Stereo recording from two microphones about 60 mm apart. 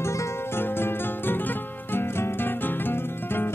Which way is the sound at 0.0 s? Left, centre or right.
Left.